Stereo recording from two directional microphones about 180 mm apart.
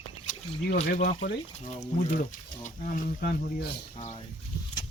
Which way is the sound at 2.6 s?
50° left (ahead or behind).